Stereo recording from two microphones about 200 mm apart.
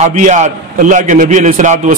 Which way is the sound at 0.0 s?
35° right (ahead or behind).